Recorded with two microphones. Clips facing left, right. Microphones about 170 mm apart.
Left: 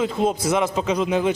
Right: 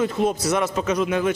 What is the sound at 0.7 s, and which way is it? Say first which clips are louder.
Speech: left 1 dB; 25° left (ahead or behind).